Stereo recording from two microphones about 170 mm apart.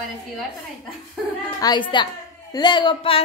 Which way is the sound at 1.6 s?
25° left (ahead or behind).